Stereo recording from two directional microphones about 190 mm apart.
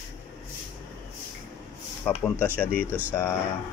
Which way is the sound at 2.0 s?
5° left (ahead or behind).